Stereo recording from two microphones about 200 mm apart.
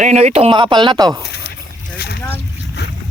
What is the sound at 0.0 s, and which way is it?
Speech, 35° right (ahead or behind).